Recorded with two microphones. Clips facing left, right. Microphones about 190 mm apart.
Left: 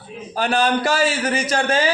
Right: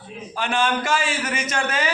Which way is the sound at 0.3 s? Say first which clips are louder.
Left 4 dB; 35° left (ahead or behind).